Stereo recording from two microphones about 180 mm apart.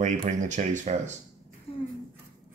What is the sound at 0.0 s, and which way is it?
Speech, 40° right (ahead or behind).